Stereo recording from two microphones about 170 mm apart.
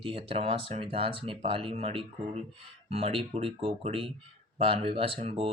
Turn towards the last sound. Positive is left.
turn(degrees=-35)  # may be behind; listen again after turning